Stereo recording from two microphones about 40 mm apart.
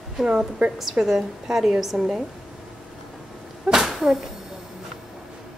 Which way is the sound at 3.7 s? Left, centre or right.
Centre.